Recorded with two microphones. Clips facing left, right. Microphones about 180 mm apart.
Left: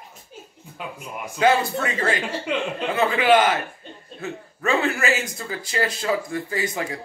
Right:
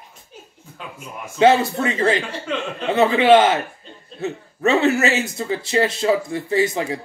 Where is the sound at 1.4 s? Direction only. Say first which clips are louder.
Right 5 dB; 25° right (ahead or behind).